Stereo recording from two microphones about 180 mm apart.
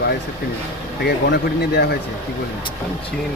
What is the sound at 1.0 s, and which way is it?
Speech, 65° left (ahead or behind).